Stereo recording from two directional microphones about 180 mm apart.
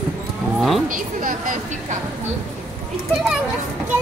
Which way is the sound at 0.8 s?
45° right (ahead or behind).